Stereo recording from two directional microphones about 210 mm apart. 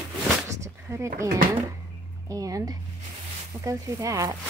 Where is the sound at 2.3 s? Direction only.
15° right (ahead or behind).